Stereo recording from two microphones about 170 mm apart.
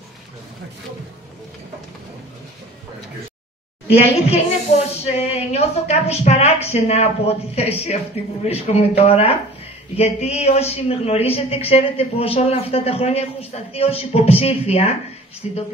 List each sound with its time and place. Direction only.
3.9 s a woman's voice: 40° left (ahead or behind)